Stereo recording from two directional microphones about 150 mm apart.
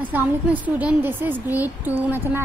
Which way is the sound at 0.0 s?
10° right (ahead or behind).